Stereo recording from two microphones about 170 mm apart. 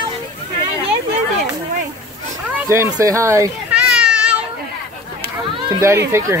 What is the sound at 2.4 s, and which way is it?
Speech, 15° right (ahead or behind).